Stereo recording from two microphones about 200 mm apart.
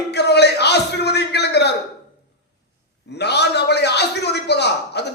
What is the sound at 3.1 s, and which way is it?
Speech, 55° left (ahead or behind).